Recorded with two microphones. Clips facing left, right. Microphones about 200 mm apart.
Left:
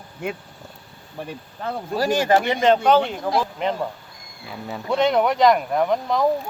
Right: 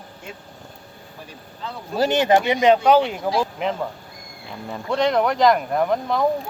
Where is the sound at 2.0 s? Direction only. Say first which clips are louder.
Right 2 dB; 20° right (ahead or behind).